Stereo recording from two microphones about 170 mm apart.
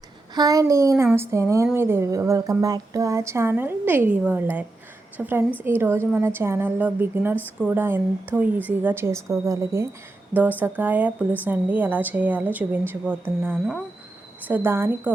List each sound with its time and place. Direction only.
0.3 s a woman's voice: 20° right (ahead or behind)